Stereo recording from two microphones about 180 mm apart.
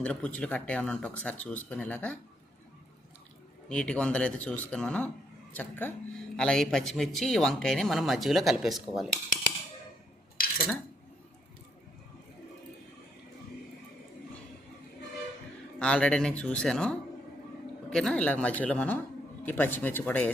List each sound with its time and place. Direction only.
0.0 s speech: 10° left (ahead or behind)
3.7 s speech: 5° left (ahead or behind)
10.4 s cutlery: 55° left (ahead or behind)
15.8 s speech: 5° left (ahead or behind)